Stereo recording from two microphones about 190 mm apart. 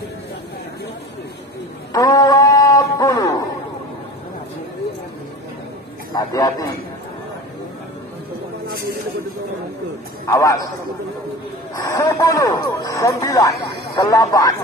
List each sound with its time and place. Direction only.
1.9 s a sound: 20° left (ahead or behind)
6.1 s a man's voice: 20° left (ahead or behind)
10.2 s speech: 15° left (ahead or behind)
11.7 s speech: 15° left (ahead or behind)